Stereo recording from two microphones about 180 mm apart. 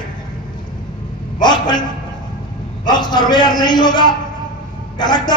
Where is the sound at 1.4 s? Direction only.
25° left (ahead or behind).